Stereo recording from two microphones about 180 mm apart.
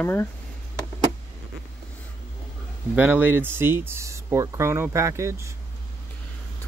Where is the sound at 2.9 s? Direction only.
10° right (ahead or behind).